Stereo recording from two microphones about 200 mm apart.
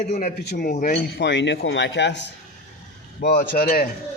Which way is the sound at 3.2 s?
45° left (ahead or behind).